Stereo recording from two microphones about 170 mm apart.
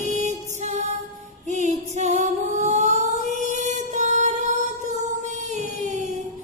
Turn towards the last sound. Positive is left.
turn(degrees=-45)  # may be behind; listen again after turning